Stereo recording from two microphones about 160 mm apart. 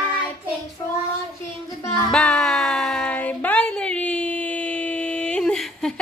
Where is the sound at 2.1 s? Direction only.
5° left (ahead or behind).